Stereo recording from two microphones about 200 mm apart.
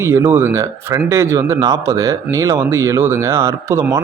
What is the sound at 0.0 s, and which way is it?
Speech, 10° right (ahead or behind).